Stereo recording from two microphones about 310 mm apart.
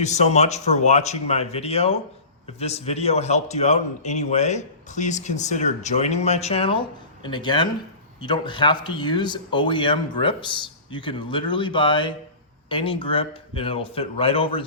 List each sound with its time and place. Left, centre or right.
0.0 s a man's voice: left